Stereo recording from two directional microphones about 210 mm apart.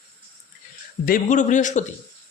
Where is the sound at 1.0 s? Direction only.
40° left (ahead or behind).